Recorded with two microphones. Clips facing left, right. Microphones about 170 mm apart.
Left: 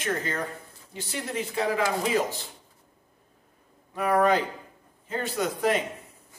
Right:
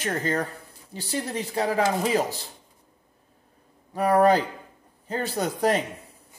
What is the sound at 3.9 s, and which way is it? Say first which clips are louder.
Speech: right 3 dB; 35° right (ahead or behind).